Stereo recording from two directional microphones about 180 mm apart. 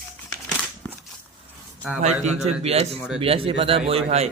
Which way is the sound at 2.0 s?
40° right (ahead or behind).